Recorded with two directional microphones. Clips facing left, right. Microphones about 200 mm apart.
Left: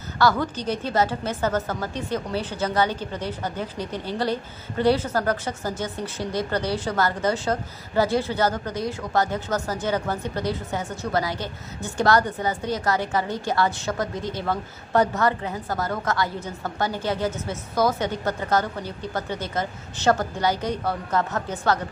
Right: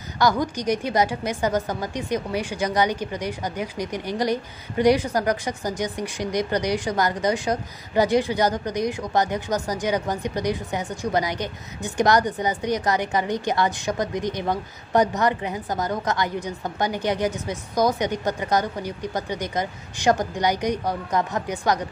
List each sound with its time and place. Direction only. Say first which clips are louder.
0.2 s a woman's voice: even; 15° right (ahead or behind)